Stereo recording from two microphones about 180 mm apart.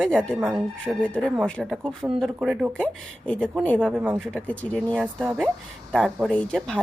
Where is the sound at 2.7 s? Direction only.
5° left (ahead or behind).